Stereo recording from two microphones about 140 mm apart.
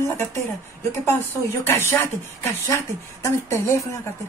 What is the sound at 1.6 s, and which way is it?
A woman's voice, 15° left (ahead or behind).